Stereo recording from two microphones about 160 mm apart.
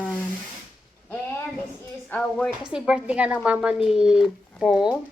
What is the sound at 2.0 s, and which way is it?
Speech, 5° left (ahead or behind).